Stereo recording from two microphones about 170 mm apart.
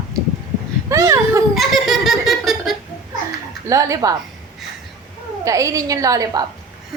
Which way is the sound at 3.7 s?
20° right (ahead or behind).